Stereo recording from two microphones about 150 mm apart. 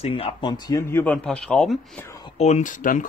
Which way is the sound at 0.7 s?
20° left (ahead or behind).